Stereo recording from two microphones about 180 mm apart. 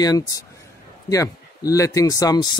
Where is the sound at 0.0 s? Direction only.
20° left (ahead or behind).